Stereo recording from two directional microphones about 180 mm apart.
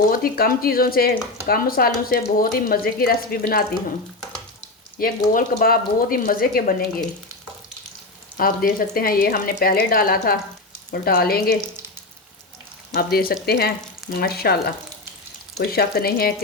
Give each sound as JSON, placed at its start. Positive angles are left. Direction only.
{"t": 0.1, "sound": "speech", "side_deg": 55}
{"t": 4.9, "sound": "speech", "side_deg": 50}
{"t": 8.4, "sound": "speech", "side_deg": 55}
{"t": 12.9, "sound": "speech", "side_deg": 55}
{"t": 15.7, "sound": "speech", "side_deg": 60}